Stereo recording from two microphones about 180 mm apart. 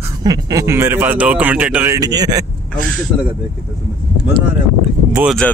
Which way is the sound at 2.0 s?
20° right (ahead or behind).